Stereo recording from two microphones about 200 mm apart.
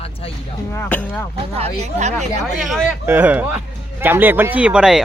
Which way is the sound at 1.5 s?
30° right (ahead or behind).